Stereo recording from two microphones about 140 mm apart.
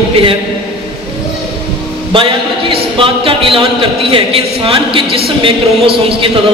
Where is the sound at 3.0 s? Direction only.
40° right (ahead or behind).